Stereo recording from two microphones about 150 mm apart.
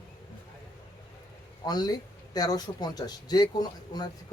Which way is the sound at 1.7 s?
25° left (ahead or behind).